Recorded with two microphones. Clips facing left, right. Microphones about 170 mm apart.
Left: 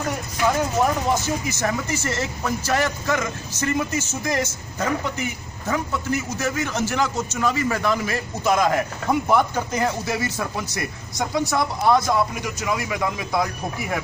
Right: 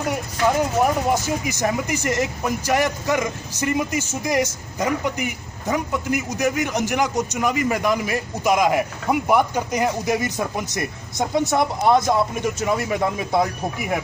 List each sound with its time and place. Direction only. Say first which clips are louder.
0.1 s speech: right 2 dB; 10° right (ahead or behind)